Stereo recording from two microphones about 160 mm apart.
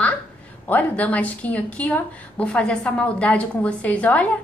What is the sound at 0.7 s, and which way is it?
A woman's voice, 10° left (ahead or behind).